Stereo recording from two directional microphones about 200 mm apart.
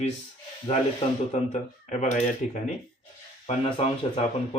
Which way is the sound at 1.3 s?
35° left (ahead or behind).